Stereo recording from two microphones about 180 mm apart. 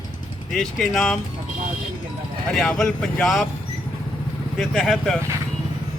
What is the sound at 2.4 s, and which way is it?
Speech, 5° left (ahead or behind).